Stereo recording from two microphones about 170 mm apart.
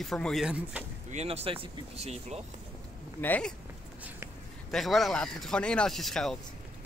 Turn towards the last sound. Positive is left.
turn(degrees=0)  # may be behind; listen again after turning